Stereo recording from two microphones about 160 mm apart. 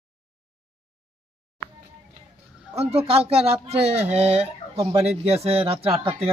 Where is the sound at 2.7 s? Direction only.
40° right (ahead or behind).